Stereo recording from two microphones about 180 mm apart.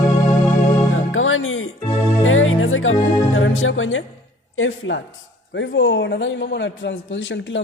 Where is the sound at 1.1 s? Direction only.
90° left.